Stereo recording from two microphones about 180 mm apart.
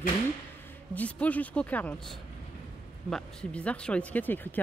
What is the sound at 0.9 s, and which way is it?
Speech, 10° left (ahead or behind).